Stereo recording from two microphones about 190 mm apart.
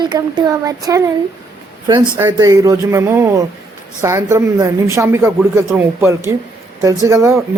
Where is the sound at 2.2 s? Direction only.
15° right (ahead or behind).